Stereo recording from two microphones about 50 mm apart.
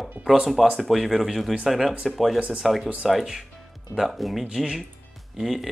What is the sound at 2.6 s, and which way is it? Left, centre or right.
Speech, centre.